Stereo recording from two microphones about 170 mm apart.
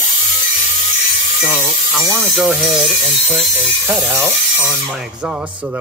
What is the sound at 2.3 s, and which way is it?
Speech, centre (ahead or behind).